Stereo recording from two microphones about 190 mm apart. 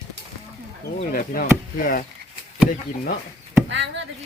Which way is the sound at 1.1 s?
50° left (ahead or behind).